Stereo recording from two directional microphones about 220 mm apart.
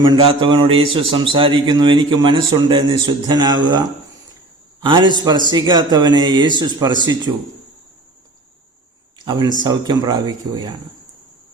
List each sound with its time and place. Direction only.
0.0 s a man's voice: 20° right (ahead or behind)
9.1 s a sound: 20° right (ahead or behind)
9.6 s a man's voice: 20° right (ahead or behind)